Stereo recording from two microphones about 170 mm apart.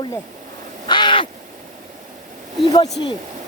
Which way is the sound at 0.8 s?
30° left (ahead or behind).